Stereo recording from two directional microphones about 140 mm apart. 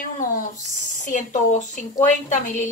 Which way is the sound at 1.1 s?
55° left (ahead or behind).